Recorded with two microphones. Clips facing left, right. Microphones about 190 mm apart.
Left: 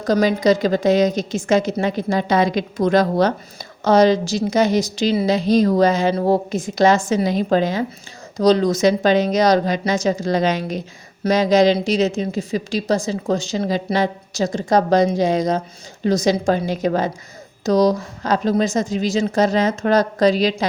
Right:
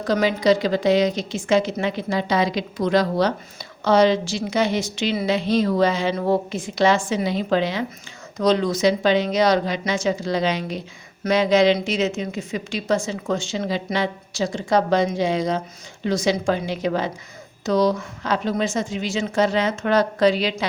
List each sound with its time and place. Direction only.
0.0 s a woman's voice: 45° left (ahead or behind)